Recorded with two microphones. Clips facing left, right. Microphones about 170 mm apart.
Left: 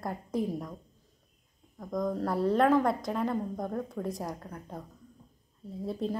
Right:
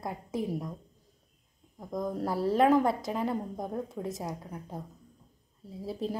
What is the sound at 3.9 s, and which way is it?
Speech, centre (ahead or behind).